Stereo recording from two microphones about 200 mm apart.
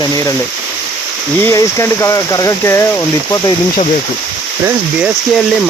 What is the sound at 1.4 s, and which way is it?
Speech, 15° left (ahead or behind).